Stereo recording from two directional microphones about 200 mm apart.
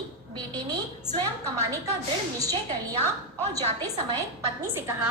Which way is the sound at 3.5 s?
20° right (ahead or behind).